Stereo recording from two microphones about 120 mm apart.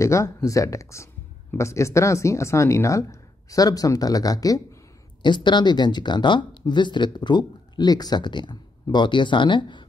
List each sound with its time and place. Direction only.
0.0 s speech: 25° left (ahead or behind); by 9.8 s 40° left (ahead or behind)